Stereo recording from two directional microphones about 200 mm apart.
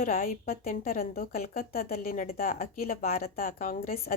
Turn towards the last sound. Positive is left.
turn(degrees=45)  # may be behind; listen again after turning